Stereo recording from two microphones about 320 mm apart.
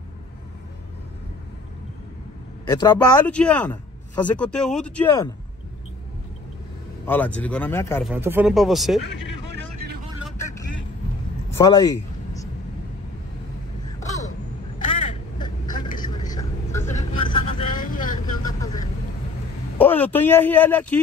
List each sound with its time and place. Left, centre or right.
2.7 s speech: centre
7.1 s speech: centre
8.1 s speech: centre
11.5 s speech: centre
13.9 s a sound: centre
14.9 s vehicle: centre
19.8 s a man's voice: centre